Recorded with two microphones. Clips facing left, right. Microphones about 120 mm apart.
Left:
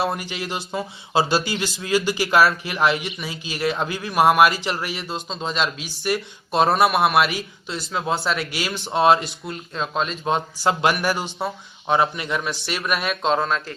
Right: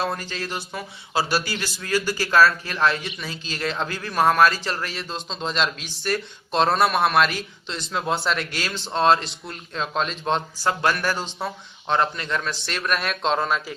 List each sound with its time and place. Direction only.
0.0 s speech: 15° left (ahead or behind)
0.5 s speech: 25° left (ahead or behind); by 10.4 s 5° left (ahead or behind)
10.6 s speech: 15° left (ahead or behind); by 13.7 s centre (ahead or behind)